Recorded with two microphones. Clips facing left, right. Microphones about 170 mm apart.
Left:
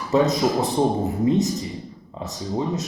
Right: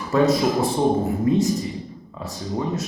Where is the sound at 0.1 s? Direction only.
20° left (ahead or behind).